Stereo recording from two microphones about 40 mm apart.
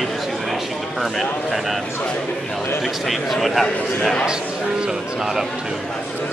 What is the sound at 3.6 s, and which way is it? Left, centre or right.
Speech, centre.